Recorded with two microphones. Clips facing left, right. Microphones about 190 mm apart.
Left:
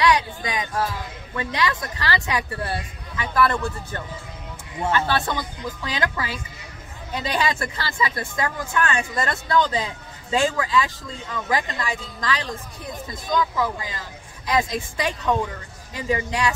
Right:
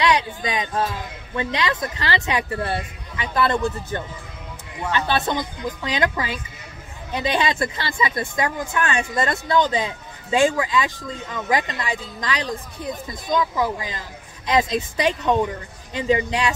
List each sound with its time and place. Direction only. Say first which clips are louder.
0.0 s speech: even; 20° right (ahead or behind)
5.0 s speech: right 2 dB; 20° right (ahead or behind)